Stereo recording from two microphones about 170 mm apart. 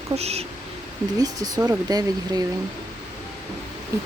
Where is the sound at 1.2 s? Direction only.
20° right (ahead or behind).